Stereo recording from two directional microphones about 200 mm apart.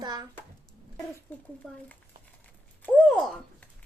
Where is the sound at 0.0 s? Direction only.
20° right (ahead or behind).